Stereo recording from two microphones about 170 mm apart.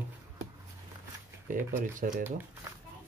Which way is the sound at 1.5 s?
50° right (ahead or behind).